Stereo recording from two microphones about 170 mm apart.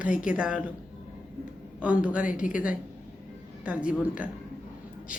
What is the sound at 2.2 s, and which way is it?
Speech, 50° left (ahead or behind).